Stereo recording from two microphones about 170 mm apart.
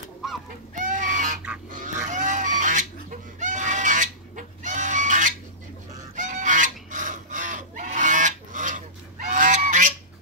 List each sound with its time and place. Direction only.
0.7 s goose: 45° right (ahead or behind)
1.7 s fowl: 50° right (ahead or behind)